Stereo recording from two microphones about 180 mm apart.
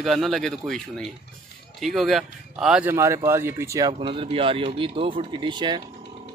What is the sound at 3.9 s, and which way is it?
Speech, 30° right (ahead or behind).